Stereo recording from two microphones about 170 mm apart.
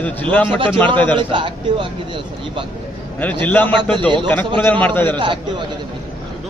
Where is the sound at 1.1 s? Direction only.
30° right (ahead or behind).